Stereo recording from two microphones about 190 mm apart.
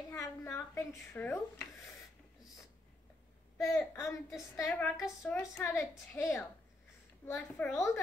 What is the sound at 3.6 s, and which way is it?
A woman's voice, centre (ahead or behind).